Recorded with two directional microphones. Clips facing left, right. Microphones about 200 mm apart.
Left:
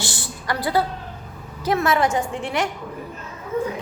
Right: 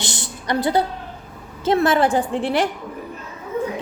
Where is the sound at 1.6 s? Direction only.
30° right (ahead or behind).